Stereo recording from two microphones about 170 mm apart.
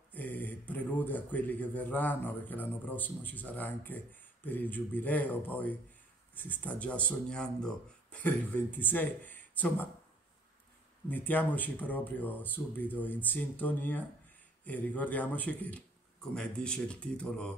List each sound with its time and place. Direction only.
0.1 s speech: 10° left (ahead or behind)
11.1 s speech: 10° left (ahead or behind)